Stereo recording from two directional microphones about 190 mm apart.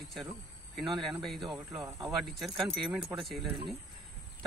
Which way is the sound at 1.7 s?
20° right (ahead or behind).